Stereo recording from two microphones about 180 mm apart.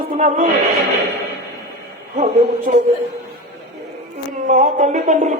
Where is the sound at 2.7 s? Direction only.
45° right (ahead or behind).